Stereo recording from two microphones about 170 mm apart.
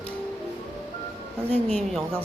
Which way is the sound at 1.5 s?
35° right (ahead or behind).